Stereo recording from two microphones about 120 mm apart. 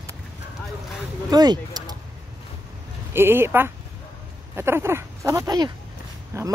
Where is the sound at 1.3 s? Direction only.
35° right (ahead or behind).